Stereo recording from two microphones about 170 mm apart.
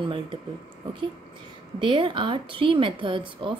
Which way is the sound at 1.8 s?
30° right (ahead or behind).